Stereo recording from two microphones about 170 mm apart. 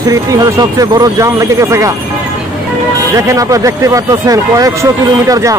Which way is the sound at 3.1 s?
20° right (ahead or behind).